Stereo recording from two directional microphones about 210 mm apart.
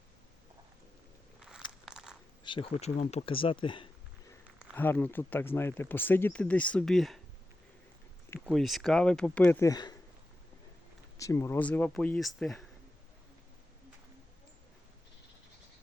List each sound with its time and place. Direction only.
1.4 s biting: centre (ahead or behind)
2.4 s speech: 25° left (ahead or behind)
4.7 s speech: 10° left (ahead or behind)
8.3 s speech: centre (ahead or behind); by 9.9 s 15° left (ahead or behind)
11.2 s speech: 15° left (ahead or behind)